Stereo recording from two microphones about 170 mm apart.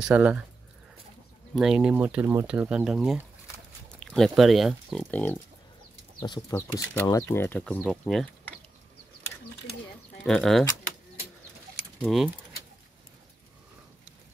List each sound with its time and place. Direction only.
0.0 s speech: 10° right (ahead or behind)
1.5 s speech: 5° right (ahead or behind)
5.0 s speech: 10° left (ahead or behind)
6.1 s speech: 25° left (ahead or behind)
6.5 s speech: 15° left (ahead or behind)
10.2 s speech: centre (ahead or behind)
12.0 s speech: centre (ahead or behind)